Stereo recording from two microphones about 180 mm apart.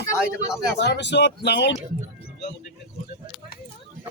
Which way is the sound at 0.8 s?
70° left (ahead or behind).